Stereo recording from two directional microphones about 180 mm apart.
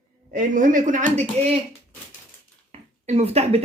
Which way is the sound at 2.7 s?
35° right (ahead or behind).